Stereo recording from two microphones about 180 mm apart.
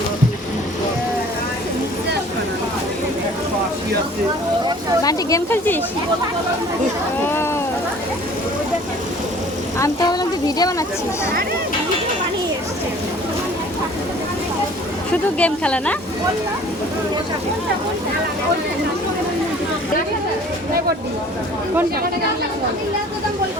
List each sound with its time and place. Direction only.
5.0 s speech: 15° left (ahead or behind)
7.3 s vehicle: 15° left (ahead or behind)
9.7 s speech: 20° left (ahead or behind)
15.4 s speech: 5° left (ahead or behind)